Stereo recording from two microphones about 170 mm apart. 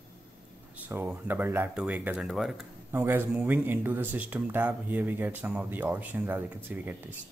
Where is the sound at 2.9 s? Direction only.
15° right (ahead or behind).